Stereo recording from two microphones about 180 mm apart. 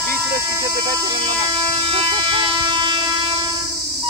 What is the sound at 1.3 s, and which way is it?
Speech, 25° right (ahead or behind).